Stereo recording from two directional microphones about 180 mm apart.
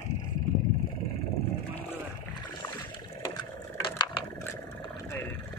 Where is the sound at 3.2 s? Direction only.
25° left (ahead or behind).